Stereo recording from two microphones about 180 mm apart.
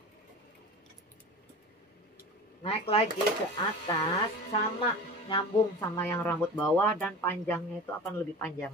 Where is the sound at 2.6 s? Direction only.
30° left (ahead or behind).